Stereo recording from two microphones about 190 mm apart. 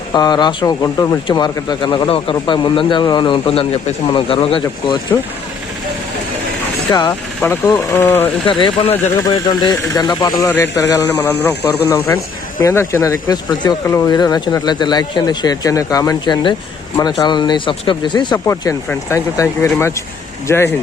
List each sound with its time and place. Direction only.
0.1 s speech: 20° left (ahead or behind)
6.9 s speech: 20° left (ahead or behind)
8.4 s speech: 25° left (ahead or behind)